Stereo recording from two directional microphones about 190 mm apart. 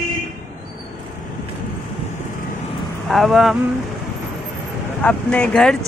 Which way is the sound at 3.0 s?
Centre (ahead or behind).